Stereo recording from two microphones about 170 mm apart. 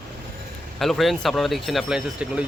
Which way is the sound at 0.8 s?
Centre (ahead or behind).